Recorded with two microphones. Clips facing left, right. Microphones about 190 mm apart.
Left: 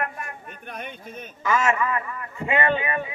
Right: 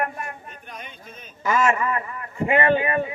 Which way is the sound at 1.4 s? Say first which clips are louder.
Right 1 dB; 35° right (ahead or behind).